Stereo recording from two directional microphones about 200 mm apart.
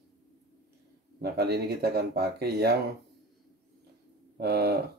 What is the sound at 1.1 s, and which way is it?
Speech, 50° right (ahead or behind).